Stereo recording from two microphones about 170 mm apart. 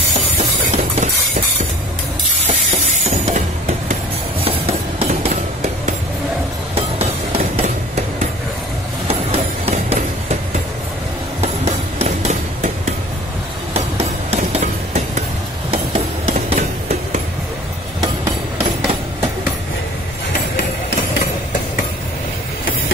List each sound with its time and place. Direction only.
0.9 s train: 50° right (ahead or behind)
2.4 s a sound: 40° right (ahead or behind)
4.5 s music: 35° right (ahead or behind)
6.7 s a sound: 35° right (ahead or behind)
11.4 s music: 40° right (ahead or behind)
13.7 s hammer: 35° right (ahead or behind)
15.7 s music: 40° right (ahead or behind)